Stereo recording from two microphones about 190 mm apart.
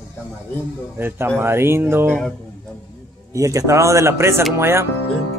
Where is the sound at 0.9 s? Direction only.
10° right (ahead or behind).